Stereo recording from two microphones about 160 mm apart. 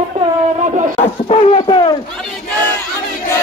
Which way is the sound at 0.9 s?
40° left (ahead or behind).